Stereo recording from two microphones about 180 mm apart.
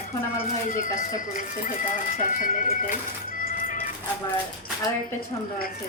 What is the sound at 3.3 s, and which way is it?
Cat, 50° left (ahead or behind).